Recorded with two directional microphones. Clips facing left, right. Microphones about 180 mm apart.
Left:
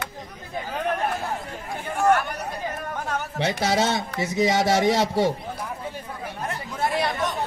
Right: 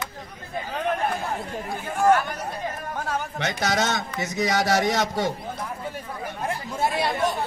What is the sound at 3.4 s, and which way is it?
A man's voice, 30° left (ahead or behind).